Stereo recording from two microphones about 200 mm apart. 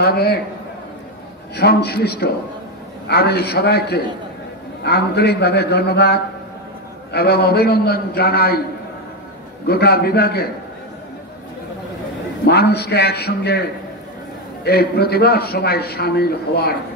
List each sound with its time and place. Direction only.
0.0 s a man's voice: 50° left (ahead or behind)
1.6 s a man's voice: 50° left (ahead or behind)
9.7 s a man's voice: 50° left (ahead or behind)
12.4 s a man's voice: 55° left (ahead or behind)